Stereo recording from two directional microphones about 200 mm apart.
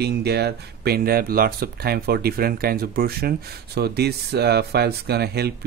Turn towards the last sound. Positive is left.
turn(degrees=-55)  # may be behind; listen again after turning